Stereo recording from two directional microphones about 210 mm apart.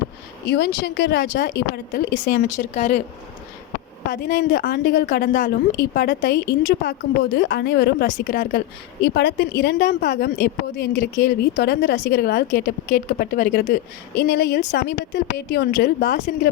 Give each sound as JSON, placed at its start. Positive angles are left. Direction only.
{"t": 0.4, "sound": "a woman's voice", "side_deg": 50}
{"t": 2.7, "sound": "speech", "side_deg": 30}
{"t": 4.1, "sound": "a woman's voice", "side_deg": 45}